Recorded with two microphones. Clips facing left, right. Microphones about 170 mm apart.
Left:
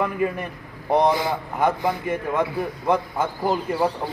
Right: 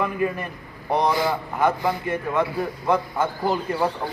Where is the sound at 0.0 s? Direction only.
15° left (ahead or behind).